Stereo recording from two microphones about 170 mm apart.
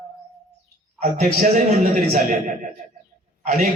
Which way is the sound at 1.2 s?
50° right (ahead or behind).